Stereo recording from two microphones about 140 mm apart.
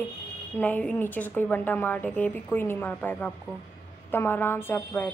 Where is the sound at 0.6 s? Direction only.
10° left (ahead or behind).